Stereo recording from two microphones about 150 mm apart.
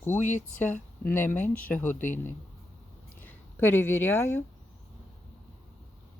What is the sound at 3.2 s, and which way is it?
Speech, 15° left (ahead or behind).